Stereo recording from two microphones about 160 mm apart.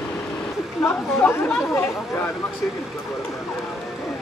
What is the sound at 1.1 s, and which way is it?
Speech, 15° left (ahead or behind).